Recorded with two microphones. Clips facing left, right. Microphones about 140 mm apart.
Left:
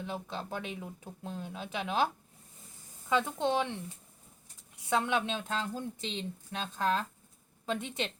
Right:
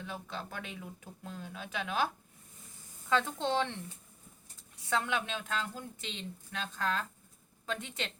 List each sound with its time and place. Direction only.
0.0 s a woman's voice: 20° left (ahead or behind)
3.1 s speech: 15° left (ahead or behind)
4.9 s a woman's voice: 20° left (ahead or behind)